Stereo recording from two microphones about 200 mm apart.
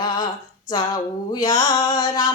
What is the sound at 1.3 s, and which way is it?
Speech, 20° left (ahead or behind).